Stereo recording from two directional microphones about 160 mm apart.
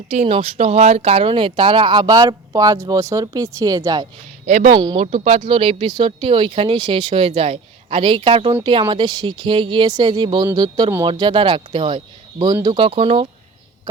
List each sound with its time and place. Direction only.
0.1 s speech: 45° right (ahead or behind); by 4.0 s 25° right (ahead or behind)
4.4 s speech: 45° right (ahead or behind)
4.7 s speech: 30° right (ahead or behind)